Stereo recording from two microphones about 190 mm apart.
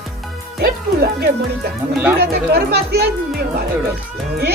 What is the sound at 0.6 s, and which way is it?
A woman's voice, 55° right (ahead or behind).